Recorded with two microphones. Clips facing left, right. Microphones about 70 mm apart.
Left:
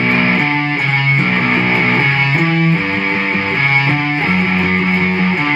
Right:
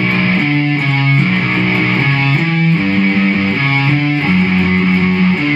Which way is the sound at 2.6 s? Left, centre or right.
Left.